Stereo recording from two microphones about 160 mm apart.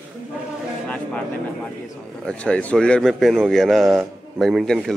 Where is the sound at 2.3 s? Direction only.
5° left (ahead or behind).